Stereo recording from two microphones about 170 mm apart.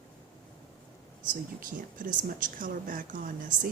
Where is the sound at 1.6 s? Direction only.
55° right (ahead or behind).